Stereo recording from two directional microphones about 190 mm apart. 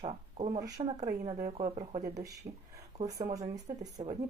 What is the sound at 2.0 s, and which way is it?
Speech, 15° right (ahead or behind).